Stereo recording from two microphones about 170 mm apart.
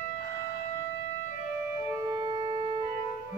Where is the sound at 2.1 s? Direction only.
25° right (ahead or behind).